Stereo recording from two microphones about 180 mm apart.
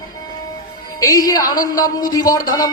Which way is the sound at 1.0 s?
20° left (ahead or behind).